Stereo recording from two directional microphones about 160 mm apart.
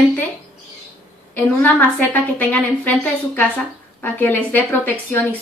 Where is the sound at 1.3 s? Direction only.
10° left (ahead or behind).